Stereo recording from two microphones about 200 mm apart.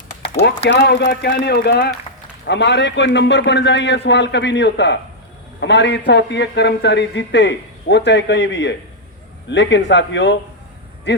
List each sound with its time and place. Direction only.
0.6 s a man's voice: 55° left (ahead or behind)